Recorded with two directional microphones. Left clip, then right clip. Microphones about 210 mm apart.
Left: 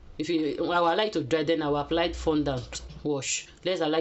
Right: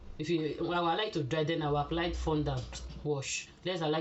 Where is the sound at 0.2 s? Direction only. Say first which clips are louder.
Left 6 dB; 55° left (ahead or behind).